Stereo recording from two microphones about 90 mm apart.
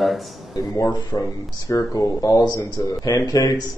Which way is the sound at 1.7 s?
40° left (ahead or behind).